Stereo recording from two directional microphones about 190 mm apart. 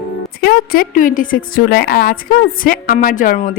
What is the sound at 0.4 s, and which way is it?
A woman's voice, 50° left (ahead or behind).